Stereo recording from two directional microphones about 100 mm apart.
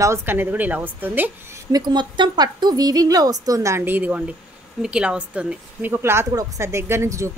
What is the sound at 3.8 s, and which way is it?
A woman's voice, 20° right (ahead or behind).